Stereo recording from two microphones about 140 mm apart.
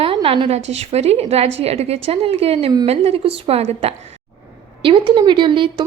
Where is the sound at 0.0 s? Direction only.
40° right (ahead or behind).